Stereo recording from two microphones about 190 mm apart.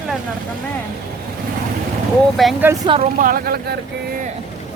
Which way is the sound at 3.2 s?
50° right (ahead or behind).